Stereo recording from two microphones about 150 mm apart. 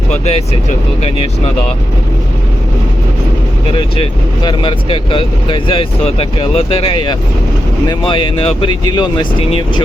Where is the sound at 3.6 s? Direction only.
35° left (ahead or behind).